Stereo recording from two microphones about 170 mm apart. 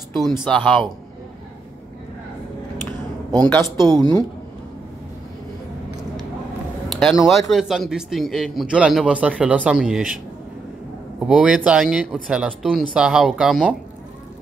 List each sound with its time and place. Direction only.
0.1 s a man's voice: centre (ahead or behind)
3.4 s speech: 10° left (ahead or behind)
3.8 s speech: 25° right (ahead or behind)
6.9 s a sound: 5° left (ahead or behind)
7.2 s a man's voice: centre (ahead or behind)
11.2 s a man's voice: 5° right (ahead or behind)